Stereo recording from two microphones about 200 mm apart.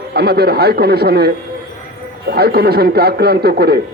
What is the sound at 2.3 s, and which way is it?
Speech, 50° right (ahead or behind).